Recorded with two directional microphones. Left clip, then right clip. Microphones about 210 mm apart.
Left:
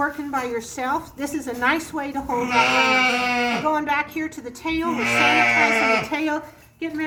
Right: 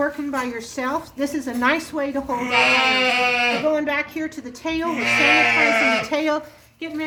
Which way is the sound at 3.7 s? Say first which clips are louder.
Even; 30° right (ahead or behind).